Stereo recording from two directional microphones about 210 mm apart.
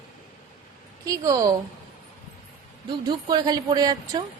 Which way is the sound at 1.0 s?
15° right (ahead or behind).